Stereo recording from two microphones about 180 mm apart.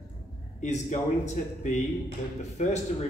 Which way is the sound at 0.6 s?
40° left (ahead or behind).